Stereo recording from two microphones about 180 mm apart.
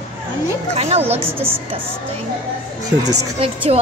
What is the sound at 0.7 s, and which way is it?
Speech, 35° right (ahead or behind).